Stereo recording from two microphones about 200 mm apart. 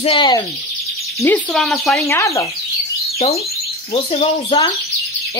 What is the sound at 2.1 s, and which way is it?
Speech, 15° left (ahead or behind).